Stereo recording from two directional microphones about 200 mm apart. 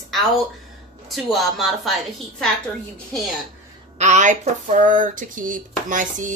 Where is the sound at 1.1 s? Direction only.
Centre (ahead or behind).